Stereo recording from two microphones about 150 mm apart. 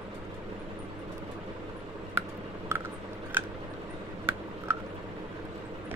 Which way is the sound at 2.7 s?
15° right (ahead or behind).